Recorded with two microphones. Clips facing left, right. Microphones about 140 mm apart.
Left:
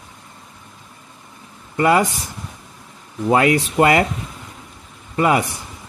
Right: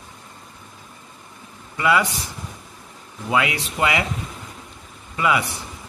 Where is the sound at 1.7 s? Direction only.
45° left (ahead or behind).